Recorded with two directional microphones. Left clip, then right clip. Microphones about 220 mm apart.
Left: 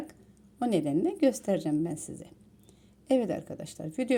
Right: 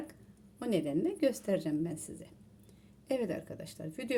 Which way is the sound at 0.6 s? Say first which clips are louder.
Left 5 dB; 30° left (ahead or behind).